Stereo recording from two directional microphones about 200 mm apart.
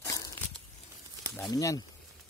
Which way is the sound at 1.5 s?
15° left (ahead or behind).